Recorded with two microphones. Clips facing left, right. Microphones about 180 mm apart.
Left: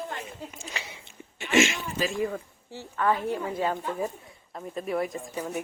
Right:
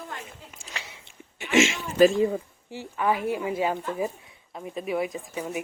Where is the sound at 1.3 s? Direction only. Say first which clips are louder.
Right 1 dB; 15° right (ahead or behind).